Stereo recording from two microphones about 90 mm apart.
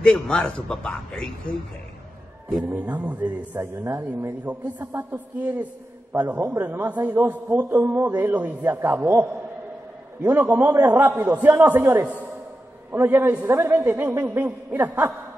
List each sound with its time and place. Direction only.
0.0 s a man's voice: 10° left (ahead or behind)
2.7 s a man's voice: 15° right (ahead or behind)
3.5 s a man's voice: 30° right (ahead or behind)
4.5 s a man's voice: 20° right (ahead or behind)